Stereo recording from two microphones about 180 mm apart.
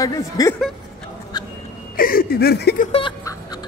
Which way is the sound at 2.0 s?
55° left (ahead or behind).